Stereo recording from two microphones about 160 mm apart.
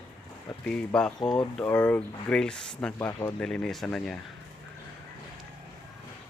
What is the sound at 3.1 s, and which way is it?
Speech, 20° left (ahead or behind).